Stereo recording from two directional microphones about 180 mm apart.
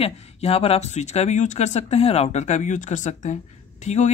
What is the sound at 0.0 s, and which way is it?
Speech, 35° left (ahead or behind).